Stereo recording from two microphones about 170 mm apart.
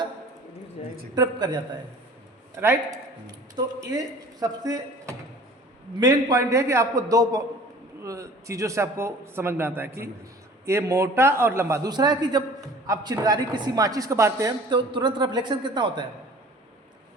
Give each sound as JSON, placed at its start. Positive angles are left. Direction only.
{"t": 0.8, "sound": "a sound", "side_deg": 35}
{"t": 1.1, "sound": "a man's voice", "side_deg": -25}
{"t": 2.6, "sound": "a man's voice", "side_deg": -15}